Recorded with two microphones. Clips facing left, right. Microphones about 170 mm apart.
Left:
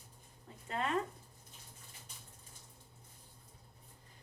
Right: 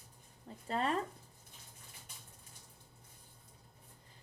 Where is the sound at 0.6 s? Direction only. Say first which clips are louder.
Right 2 dB; 35° right (ahead or behind).